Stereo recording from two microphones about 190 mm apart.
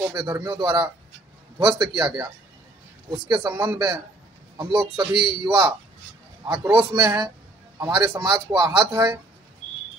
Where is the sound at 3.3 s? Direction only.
25° right (ahead or behind).